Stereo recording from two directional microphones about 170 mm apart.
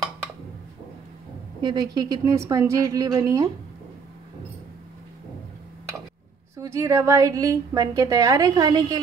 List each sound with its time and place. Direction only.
1.6 s a woman's voice: 25° right (ahead or behind)
6.6 s a woman's voice: 15° right (ahead or behind)